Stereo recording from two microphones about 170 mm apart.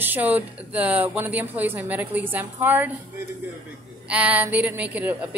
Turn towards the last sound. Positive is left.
turn(degrees=-10)  # may be behind; listen again after turning